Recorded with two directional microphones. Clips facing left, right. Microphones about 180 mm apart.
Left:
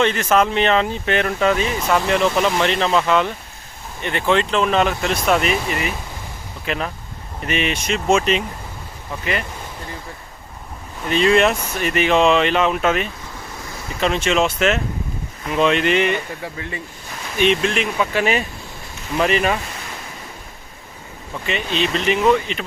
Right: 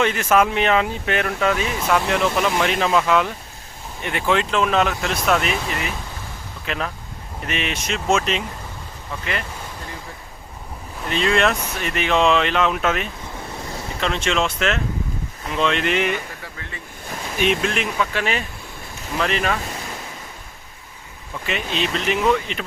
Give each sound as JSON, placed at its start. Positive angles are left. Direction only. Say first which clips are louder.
{"t": 0.0, "sound": "speech", "louder": "left 1 dB", "side_deg": -5}
{"t": 11.1, "sound": "speech", "louder": "left 4 dB", "side_deg": 0}
{"t": 16.6, "sound": "speech", "louder": "left 7 dB", "side_deg": 15}
{"t": 17.3, "sound": "speech", "louder": "left 3 dB", "side_deg": -5}
{"t": 18.0, "sound": "speech", "louder": "left 7 dB", "side_deg": 10}
{"t": 21.4, "sound": "speech", "louder": "left 2 dB", "side_deg": 0}